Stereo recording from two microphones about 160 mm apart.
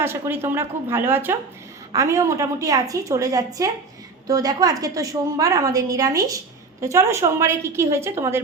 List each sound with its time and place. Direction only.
0.0 s a woman's voice: 15° right (ahead or behind)